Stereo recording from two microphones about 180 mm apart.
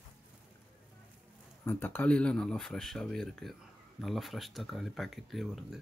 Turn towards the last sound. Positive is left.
turn(degrees=0)  # may be behind; listen again after turning